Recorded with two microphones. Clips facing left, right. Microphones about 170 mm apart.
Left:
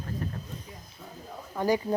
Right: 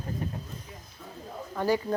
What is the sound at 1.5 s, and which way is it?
Speech, 15° left (ahead or behind).